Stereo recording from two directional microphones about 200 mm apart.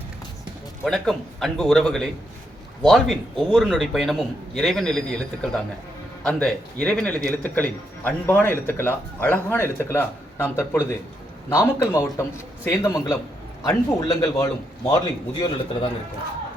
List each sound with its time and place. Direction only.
0.9 s a man's voice: centre (ahead or behind); by 15.9 s 20° left (ahead or behind)